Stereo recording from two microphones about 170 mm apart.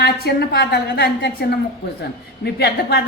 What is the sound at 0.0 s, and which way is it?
A woman's voice, 70° left (ahead or behind).